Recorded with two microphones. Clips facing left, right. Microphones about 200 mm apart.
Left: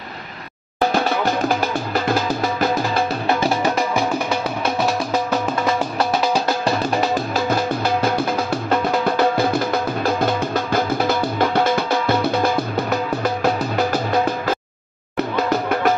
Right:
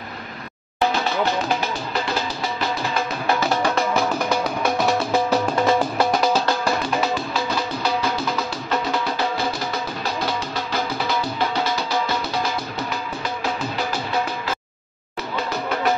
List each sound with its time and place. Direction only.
0.9 s music: 50° left (ahead or behind)
6.9 s music: 50° left (ahead or behind)